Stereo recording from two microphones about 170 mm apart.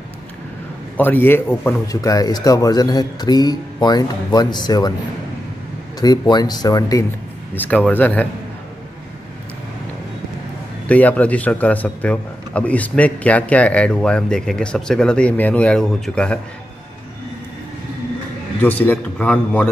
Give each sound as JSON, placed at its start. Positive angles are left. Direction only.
{"t": 0.9, "sound": "speech", "side_deg": 10}
{"t": 5.9, "sound": "speech", "side_deg": 25}
{"t": 7.5, "sound": "a man's voice", "side_deg": 10}
{"t": 10.9, "sound": "a man's voice", "side_deg": 10}
{"t": 18.6, "sound": "a man's voice", "side_deg": 10}